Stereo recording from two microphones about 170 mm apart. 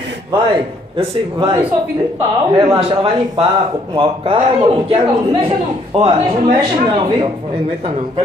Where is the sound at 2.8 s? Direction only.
35° right (ahead or behind).